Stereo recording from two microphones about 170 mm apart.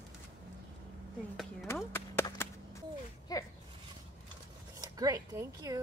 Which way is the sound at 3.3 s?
20° left (ahead or behind).